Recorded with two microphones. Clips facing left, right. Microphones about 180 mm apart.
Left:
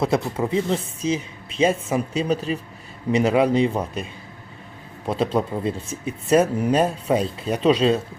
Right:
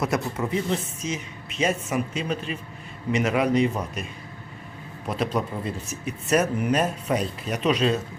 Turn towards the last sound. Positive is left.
turn(degrees=30)  # may be behind; listen again after turning